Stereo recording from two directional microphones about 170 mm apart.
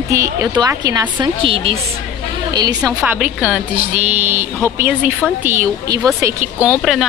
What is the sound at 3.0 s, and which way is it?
Speech, 10° right (ahead or behind).